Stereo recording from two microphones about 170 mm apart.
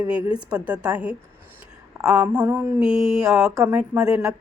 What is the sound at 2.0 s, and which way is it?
Mantra, 5° right (ahead or behind).